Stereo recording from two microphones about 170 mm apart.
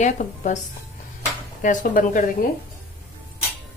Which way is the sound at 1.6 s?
50° left (ahead or behind).